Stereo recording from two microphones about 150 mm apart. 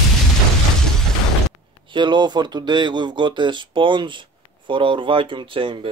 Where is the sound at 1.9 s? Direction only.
30° right (ahead or behind).